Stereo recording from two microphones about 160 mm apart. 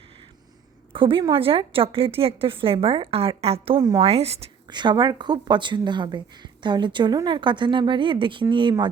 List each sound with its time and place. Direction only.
0.9 s a woman's voice: 35° right (ahead or behind)
3.8 s speech: 25° right (ahead or behind)
4.0 s a woman's voice: 40° right (ahead or behind)
4.7 s speech: 30° right (ahead or behind)